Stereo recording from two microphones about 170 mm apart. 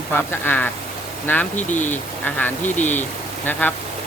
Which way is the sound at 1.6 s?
45° left (ahead or behind).